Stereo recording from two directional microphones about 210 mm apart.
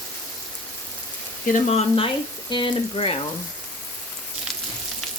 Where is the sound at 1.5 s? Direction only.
30° left (ahead or behind).